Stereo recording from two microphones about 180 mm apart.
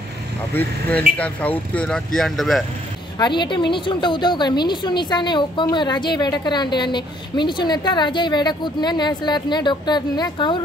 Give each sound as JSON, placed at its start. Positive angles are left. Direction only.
{"t": 0.6, "sound": "speech", "side_deg": 10}
{"t": 3.2, "sound": "a woman's voice", "side_deg": 25}